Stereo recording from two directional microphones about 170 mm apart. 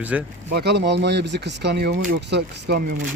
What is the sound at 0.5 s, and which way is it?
Speech, 75° right (ahead or behind).